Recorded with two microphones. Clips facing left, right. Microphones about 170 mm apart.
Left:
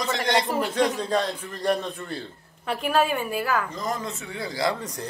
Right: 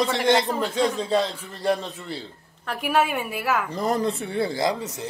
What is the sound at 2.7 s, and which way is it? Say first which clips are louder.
Speech: even; centre (ahead or behind).